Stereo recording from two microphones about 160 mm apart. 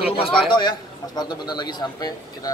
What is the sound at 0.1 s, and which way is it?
A man's voice, 35° left (ahead or behind).